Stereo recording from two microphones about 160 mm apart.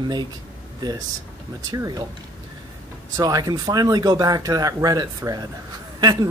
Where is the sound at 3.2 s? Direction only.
25° right (ahead or behind).